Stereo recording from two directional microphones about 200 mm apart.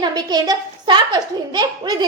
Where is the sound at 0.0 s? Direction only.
20° right (ahead or behind).